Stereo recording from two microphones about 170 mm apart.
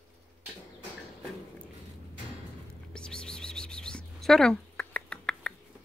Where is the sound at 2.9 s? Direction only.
5° left (ahead or behind).